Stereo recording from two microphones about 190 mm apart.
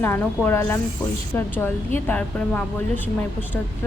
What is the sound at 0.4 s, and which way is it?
A woman's voice, 10° left (ahead or behind).